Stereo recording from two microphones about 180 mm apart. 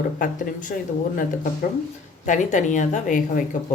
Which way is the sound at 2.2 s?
45° left (ahead or behind).